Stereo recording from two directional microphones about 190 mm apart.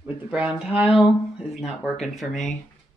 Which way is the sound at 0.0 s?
5° right (ahead or behind).